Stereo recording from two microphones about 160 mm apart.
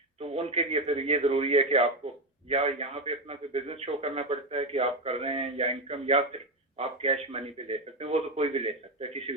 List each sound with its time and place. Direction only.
0.2 s a man's voice: 40° right (ahead or behind)